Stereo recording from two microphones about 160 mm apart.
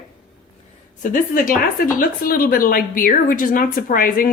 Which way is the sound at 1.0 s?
60° left (ahead or behind).